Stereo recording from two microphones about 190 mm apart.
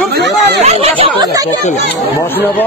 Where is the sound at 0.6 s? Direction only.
30° right (ahead or behind).